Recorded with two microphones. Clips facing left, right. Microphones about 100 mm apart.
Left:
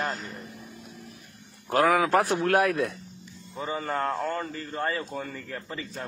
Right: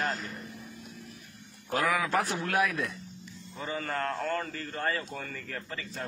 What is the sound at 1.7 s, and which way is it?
Speech, 55° left (ahead or behind).